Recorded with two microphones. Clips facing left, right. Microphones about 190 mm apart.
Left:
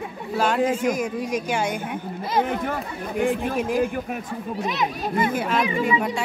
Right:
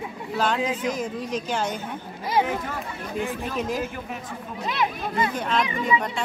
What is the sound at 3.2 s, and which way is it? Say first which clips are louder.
Speech: left 7 dB; 55° left (ahead or behind).